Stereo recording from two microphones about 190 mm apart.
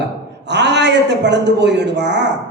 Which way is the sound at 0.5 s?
65° right (ahead or behind).